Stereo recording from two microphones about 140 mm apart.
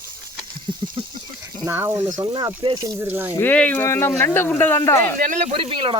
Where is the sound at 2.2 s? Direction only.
30° right (ahead or behind).